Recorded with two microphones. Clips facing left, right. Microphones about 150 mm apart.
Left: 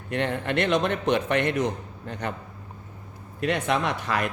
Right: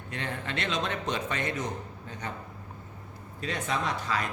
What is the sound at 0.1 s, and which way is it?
A man's voice, 65° left (ahead or behind).